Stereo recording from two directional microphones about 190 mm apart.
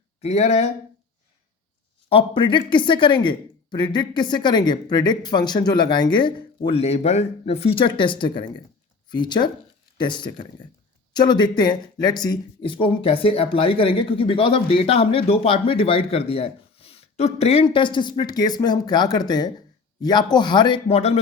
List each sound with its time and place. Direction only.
0.2 s speech: 35° left (ahead or behind)
2.0 s speech: 30° left (ahead or behind)